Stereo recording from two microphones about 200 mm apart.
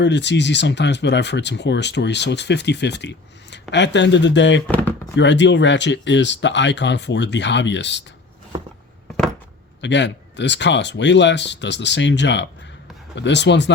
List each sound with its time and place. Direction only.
0.0 s speech: 60° left (ahead or behind)
4.7 s speech: 10° left (ahead or behind)
5.1 s speech: 65° left (ahead or behind)
9.8 s speech: 60° left (ahead or behind)